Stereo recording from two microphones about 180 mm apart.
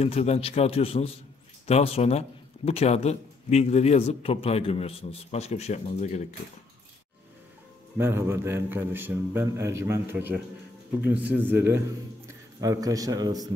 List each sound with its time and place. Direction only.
0.0 s a man's voice: 35° left (ahead or behind)
8.0 s a man's voice: 15° right (ahead or behind)